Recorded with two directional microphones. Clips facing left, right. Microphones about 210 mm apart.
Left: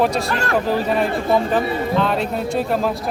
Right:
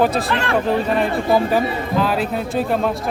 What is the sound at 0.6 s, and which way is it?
A man's voice, centre (ahead or behind).